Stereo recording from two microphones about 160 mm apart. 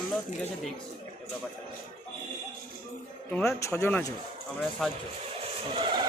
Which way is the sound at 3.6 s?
15° left (ahead or behind).